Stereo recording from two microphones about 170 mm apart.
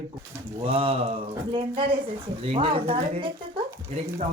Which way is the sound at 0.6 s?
30° right (ahead or behind).